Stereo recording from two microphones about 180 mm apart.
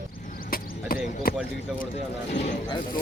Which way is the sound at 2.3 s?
45° left (ahead or behind).